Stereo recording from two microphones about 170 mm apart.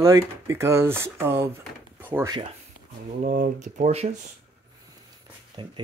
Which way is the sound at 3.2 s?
50° right (ahead or behind).